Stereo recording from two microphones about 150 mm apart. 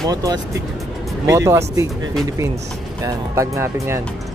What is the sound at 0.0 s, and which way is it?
Speech, 25° right (ahead or behind).